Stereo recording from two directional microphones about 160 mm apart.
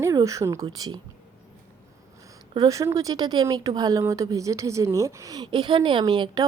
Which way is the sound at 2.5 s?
20° right (ahead or behind).